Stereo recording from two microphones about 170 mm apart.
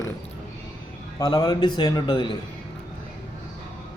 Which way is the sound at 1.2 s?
25° left (ahead or behind).